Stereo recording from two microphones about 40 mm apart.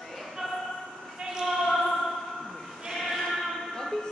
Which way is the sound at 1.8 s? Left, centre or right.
Centre.